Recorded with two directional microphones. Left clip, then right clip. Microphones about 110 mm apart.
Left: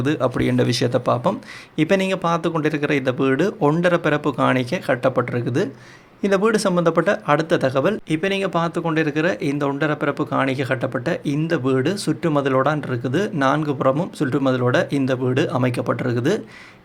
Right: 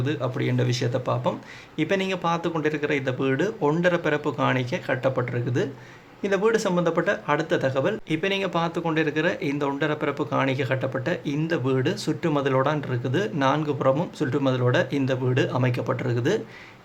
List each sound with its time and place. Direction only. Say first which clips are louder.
0.0 s speech: left 7 dB; 85° left; by 2.6 s 40° left (ahead or behind)
2.6 s speech: left 3 dB; 50° left (ahead or behind)
8.1 s speech: left 4 dB; 35° left (ahead or behind)